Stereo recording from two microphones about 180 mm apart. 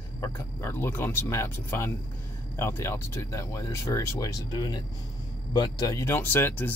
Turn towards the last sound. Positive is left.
turn(degrees=10)  # may be behind; listen again after turning